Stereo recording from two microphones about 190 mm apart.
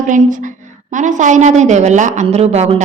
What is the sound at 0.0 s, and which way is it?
A woman's voice, 40° right (ahead or behind).